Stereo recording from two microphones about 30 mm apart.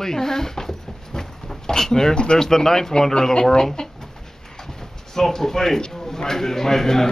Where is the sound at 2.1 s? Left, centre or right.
Left.